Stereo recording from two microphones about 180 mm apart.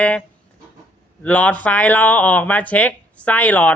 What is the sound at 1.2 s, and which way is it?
Speech, 10° left (ahead or behind).